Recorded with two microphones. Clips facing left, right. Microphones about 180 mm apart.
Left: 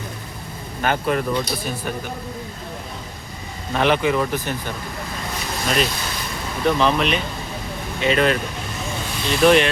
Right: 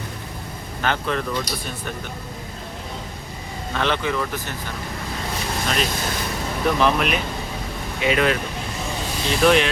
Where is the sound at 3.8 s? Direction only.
15° left (ahead or behind).